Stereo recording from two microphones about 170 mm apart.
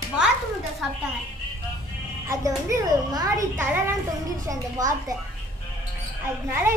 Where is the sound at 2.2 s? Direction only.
20° right (ahead or behind).